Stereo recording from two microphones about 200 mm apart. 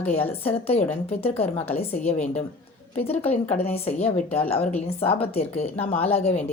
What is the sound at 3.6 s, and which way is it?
A woman's voice, 30° left (ahead or behind).